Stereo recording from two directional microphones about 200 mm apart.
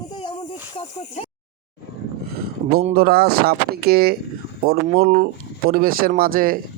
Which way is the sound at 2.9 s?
50° right (ahead or behind).